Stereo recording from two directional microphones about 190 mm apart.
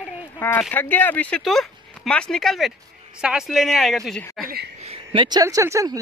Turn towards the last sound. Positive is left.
turn(degrees=-15)  # may be behind; listen again after turning